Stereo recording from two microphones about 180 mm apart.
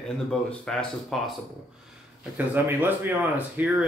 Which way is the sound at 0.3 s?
5° left (ahead or behind).